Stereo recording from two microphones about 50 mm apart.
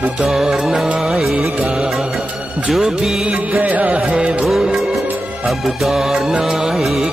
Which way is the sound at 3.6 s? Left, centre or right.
Right.